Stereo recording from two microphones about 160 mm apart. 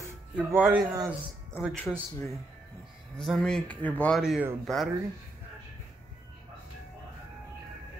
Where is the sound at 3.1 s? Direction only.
Centre (ahead or behind).